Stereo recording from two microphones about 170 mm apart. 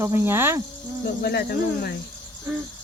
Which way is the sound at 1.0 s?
65° left (ahead or behind).